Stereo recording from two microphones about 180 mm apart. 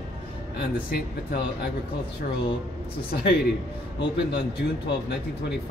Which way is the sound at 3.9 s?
70° left (ahead or behind).